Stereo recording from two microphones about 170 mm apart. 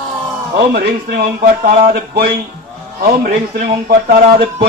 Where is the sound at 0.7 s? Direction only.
60° right (ahead or behind).